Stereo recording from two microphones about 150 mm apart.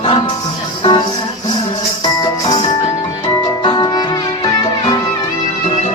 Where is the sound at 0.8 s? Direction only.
30° left (ahead or behind).